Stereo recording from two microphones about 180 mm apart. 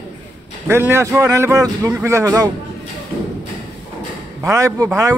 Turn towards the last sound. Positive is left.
turn(degrees=-15)  # may be behind; listen again after turning